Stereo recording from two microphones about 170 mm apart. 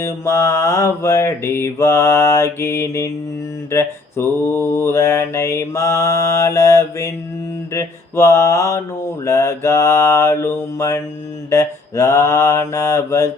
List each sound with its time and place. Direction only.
0.0 s mantra: 15° left (ahead or behind)